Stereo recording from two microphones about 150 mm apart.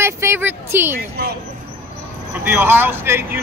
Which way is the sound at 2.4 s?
15° right (ahead or behind).